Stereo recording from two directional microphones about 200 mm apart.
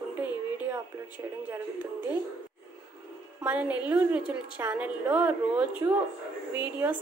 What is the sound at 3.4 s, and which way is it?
A woman's voice, 10° right (ahead or behind).